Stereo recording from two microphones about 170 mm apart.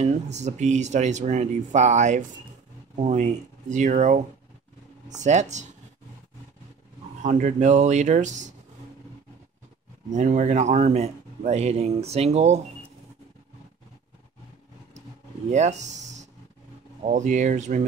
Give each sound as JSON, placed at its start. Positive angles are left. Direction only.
{"t": 0.0, "sound": "speech", "side_deg": -45}
{"t": 7.2, "sound": "speech", "side_deg": -45}
{"t": 10.1, "sound": "a man's voice", "side_deg": -45}
{"t": 15.5, "sound": "speech", "side_deg": -45}